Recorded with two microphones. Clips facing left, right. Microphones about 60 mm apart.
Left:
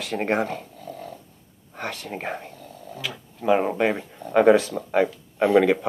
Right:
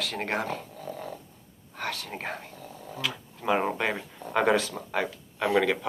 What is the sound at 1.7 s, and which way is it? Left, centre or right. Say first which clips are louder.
Speech: left 3 dB; left.